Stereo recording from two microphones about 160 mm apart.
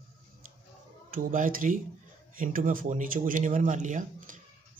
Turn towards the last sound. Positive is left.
turn(degrees=-55)  # may be behind; listen again after turning